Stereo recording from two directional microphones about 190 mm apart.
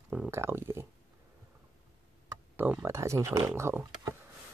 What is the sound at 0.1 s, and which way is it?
Speech, 10° right (ahead or behind).